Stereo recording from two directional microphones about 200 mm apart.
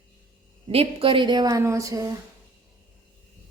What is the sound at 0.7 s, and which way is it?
Speech, 30° right (ahead or behind).